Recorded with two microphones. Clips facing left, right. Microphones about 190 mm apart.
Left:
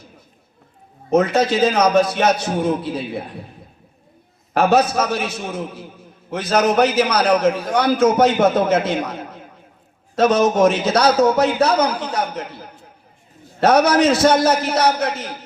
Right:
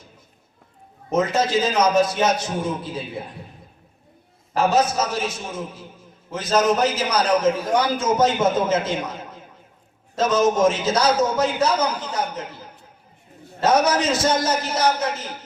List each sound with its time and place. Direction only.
1.1 s a man's voice: 65° left (ahead or behind)
4.5 s a man's voice: 65° left (ahead or behind)